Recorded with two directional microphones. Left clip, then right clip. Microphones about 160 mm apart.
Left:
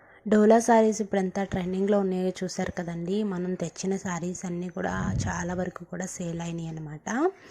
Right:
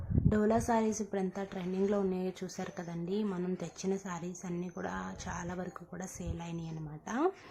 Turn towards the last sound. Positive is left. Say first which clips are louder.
# left 7 dB
turn(degrees=35)  # may be behind; listen again after turning